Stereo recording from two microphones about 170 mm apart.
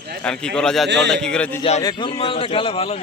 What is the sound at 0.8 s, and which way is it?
Speech, 90° right.